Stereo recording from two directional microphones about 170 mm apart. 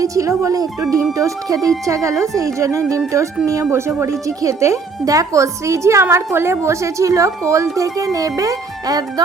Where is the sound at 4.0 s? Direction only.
20° right (ahead or behind).